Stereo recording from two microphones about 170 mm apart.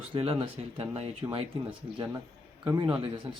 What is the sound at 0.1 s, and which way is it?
Speech, 30° right (ahead or behind).